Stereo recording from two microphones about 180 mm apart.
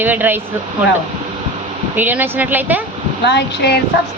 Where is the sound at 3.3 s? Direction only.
65° left (ahead or behind).